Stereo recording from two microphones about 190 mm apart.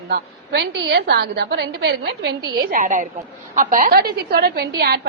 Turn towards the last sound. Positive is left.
turn(degrees=-55)  # may be behind; listen again after turning